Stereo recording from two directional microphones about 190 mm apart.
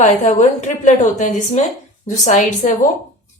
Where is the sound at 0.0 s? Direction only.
40° left (ahead or behind).